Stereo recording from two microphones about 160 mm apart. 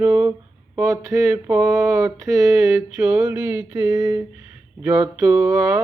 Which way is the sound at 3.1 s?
5° right (ahead or behind).